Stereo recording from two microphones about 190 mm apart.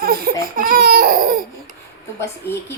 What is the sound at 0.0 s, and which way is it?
Baby cry, 50° right (ahead or behind).